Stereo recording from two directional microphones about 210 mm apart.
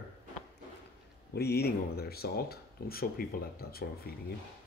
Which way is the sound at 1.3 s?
50° left (ahead or behind).